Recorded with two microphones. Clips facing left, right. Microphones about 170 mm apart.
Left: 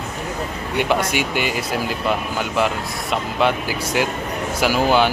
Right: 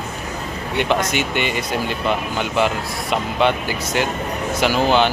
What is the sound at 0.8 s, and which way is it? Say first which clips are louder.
Speech: even; 10° left (ahead or behind).